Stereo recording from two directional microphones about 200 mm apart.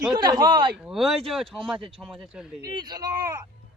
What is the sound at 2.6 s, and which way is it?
Speech, 20° right (ahead or behind).